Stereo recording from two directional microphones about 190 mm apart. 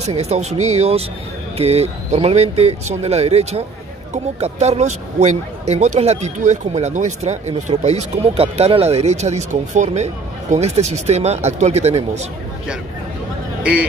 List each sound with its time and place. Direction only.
0.0 s speech: 35° right (ahead or behind)
13.6 s speech: 5° right (ahead or behind)